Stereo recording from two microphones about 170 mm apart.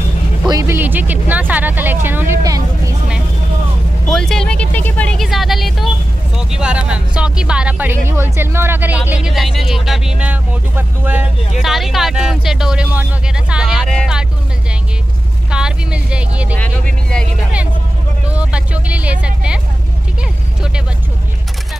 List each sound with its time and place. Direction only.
0.5 s speech: 15° right (ahead or behind)
4.1 s speech: 5° left (ahead or behind)
15.5 s speech: 5° right (ahead or behind)
18.3 s speech: 5° right (ahead or behind)